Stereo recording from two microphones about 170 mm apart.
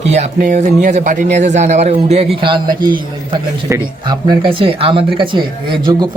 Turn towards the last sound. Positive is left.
turn(degrees=-25)  # may be behind; listen again after turning